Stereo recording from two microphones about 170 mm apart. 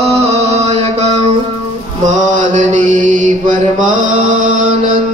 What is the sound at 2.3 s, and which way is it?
Mantra, 45° right (ahead or behind).